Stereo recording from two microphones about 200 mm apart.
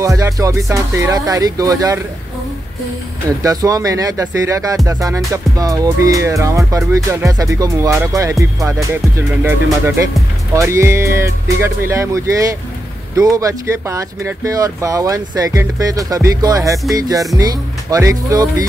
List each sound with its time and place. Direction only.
0.0 s speech: 15° right (ahead or behind)
3.3 s speech: 15° right (ahead or behind)
10.5 s speech: 15° right (ahead or behind)